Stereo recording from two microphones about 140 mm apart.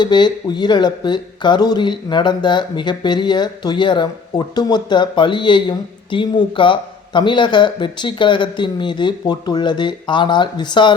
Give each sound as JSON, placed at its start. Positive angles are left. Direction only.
{"t": 0.0, "sound": "speech", "side_deg": 35}